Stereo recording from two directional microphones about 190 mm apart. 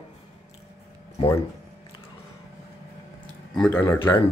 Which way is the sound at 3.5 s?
5° left (ahead or behind).